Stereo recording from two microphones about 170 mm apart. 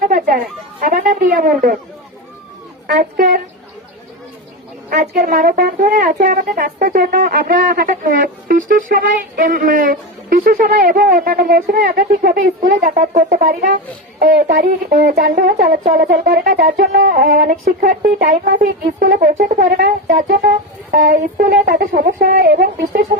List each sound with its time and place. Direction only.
0.1 s a woman's voice: 55° right (ahead or behind)
2.8 s a woman's voice: 55° right (ahead or behind)
4.9 s a woman's voice: 55° right (ahead or behind)